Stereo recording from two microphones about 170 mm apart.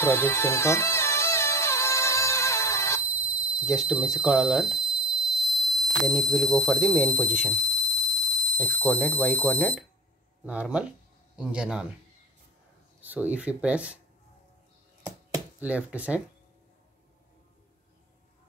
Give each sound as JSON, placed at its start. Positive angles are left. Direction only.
{"t": 0.0, "sound": "music", "side_deg": 15}
{"t": 3.1, "sound": "fire alarm", "side_deg": -10}
{"t": 7.4, "sound": "a sound", "side_deg": 5}
{"t": 8.5, "sound": "speech", "side_deg": 5}
{"t": 10.4, "sound": "speech", "side_deg": -5}
{"t": 13.0, "sound": "speech", "side_deg": -10}
{"t": 15.6, "sound": "speech", "side_deg": -10}